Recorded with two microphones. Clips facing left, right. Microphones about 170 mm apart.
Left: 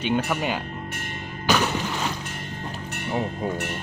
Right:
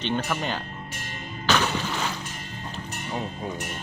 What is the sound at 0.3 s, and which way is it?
Speech, 10° left (ahead or behind).